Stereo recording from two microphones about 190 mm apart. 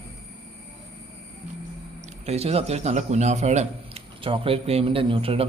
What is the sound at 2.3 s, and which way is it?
Speech, 35° right (ahead or behind).